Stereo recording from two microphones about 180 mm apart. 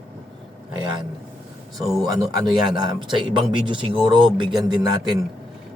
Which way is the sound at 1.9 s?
Centre (ahead or behind).